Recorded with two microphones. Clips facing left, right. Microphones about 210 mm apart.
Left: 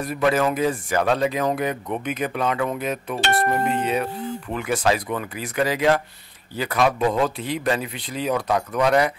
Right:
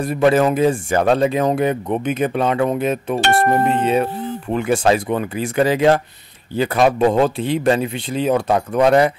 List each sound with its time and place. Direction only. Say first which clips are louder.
0.0 s speech: right 6 dB; 30° right (ahead or behind)
3.2 s speech: right 5 dB; 50° right (ahead or behind)
3.6 s speech: right 6 dB; 25° right (ahead or behind)